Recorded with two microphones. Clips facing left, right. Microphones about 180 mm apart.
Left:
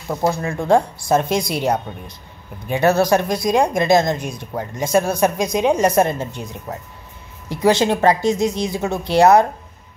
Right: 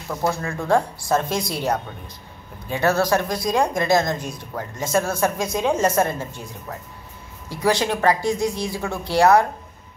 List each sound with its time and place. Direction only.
0.1 s a woman's voice: 20° left (ahead or behind)